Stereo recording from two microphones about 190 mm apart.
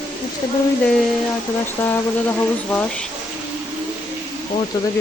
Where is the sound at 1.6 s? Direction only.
10° left (ahead or behind).